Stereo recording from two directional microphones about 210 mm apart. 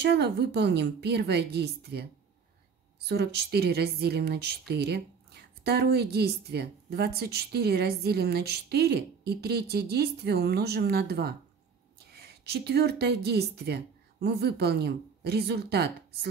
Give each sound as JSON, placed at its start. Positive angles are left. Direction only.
{"t": 0.0, "sound": "a woman's voice", "side_deg": -50}
{"t": 3.1, "sound": "a woman's voice", "side_deg": -50}